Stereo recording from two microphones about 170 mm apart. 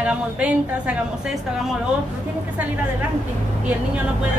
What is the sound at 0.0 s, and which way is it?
Speech, 5° right (ahead or behind).